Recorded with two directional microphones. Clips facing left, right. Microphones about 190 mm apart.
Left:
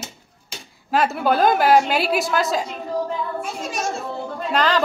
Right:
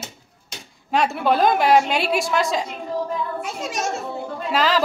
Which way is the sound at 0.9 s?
Centre (ahead or behind).